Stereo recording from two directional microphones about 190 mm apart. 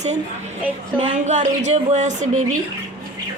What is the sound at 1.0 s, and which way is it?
A woman's voice, 40° right (ahead or behind).